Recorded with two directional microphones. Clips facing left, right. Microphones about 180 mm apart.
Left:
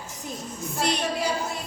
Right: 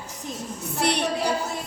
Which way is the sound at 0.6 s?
70° right (ahead or behind).